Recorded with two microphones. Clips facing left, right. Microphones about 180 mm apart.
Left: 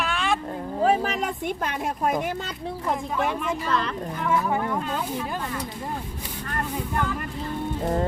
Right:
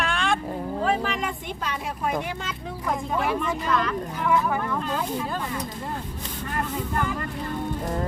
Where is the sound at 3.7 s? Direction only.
30° left (ahead or behind).